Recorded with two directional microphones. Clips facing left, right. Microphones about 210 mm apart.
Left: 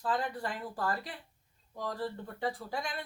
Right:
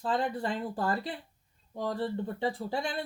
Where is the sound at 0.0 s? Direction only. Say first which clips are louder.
Right 3 dB; 25° right (ahead or behind).